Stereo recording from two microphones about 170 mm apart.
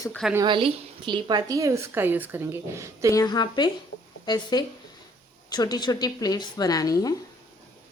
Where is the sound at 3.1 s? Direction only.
25° left (ahead or behind).